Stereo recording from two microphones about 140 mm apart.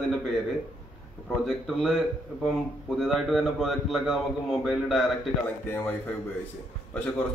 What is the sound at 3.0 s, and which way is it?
A man's voice, centre (ahead or behind).